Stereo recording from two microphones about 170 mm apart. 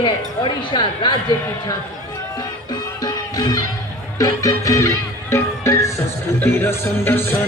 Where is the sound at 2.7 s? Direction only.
25° left (ahead or behind).